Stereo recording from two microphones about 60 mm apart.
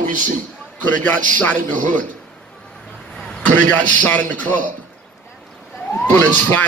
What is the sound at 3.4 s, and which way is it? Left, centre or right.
A man's voice, left.